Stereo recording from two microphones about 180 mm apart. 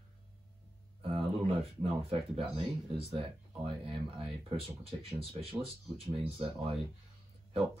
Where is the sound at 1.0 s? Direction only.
30° right (ahead or behind).